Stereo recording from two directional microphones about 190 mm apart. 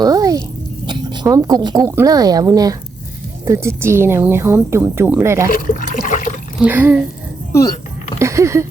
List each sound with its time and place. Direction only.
0.0 s a sound: 20° right (ahead or behind)
1.8 s a woman's voice: 10° right (ahead or behind)
5.5 s water: 50° left (ahead or behind)
6.6 s speech: 10° right (ahead or behind)
8.2 s speech: 15° right (ahead or behind)